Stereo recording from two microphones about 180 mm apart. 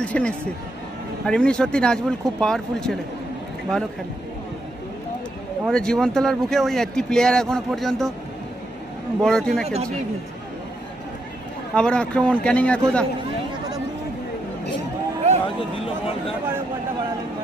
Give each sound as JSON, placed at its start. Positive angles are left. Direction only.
{"t": 0.0, "sound": "speech", "side_deg": 5}
{"t": 5.7, "sound": "speech", "side_deg": 5}
{"t": 9.2, "sound": "speech", "side_deg": 5}
{"t": 11.7, "sound": "speech", "side_deg": 5}
{"t": 15.4, "sound": "speech", "side_deg": 30}